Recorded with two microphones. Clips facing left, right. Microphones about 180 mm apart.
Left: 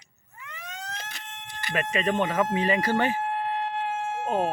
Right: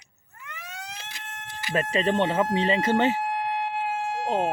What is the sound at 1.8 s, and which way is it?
Speech, 30° right (ahead or behind).